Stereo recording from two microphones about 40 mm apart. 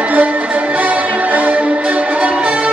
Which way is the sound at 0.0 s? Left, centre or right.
Right.